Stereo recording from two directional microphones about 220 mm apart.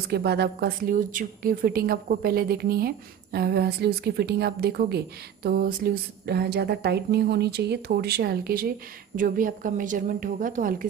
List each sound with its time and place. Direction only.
0.1 s a woman's voice: 45° right (ahead or behind)